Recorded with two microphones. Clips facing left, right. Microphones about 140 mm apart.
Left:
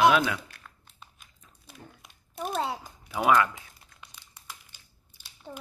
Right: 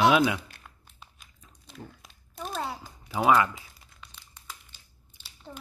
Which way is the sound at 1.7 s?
5° left (ahead or behind).